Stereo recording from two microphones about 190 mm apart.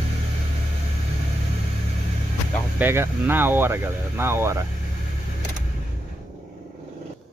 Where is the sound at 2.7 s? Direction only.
10° right (ahead or behind).